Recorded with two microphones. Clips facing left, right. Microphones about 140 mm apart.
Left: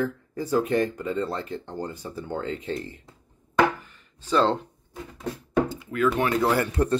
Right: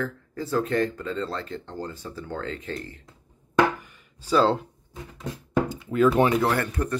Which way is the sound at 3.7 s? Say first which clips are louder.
Right 2 dB; 10° right (ahead or behind).